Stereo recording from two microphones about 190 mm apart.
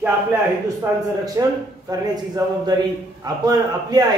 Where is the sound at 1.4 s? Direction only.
20° right (ahead or behind).